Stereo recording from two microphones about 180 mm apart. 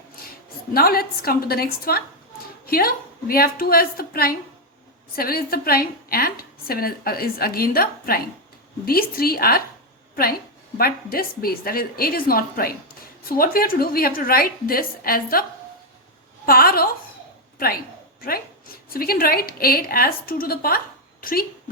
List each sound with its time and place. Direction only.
0.7 s a woman's voice: 55° left (ahead or behind)
10.8 s a woman's voice: 55° left (ahead or behind)
16.5 s a woman's voice: 55° left (ahead or behind)
18.2 s a woman's voice: 55° left (ahead or behind)